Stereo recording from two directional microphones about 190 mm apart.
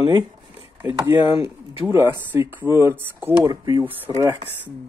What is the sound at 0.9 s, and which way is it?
Speech, 20° right (ahead or behind).